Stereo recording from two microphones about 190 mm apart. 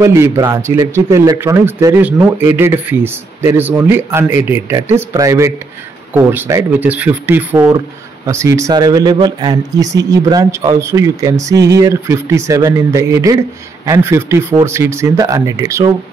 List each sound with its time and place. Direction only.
0.0 s speech: 15° right (ahead or behind)